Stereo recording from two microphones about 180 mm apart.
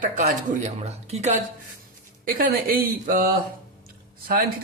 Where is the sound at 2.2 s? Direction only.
55° right (ahead or behind).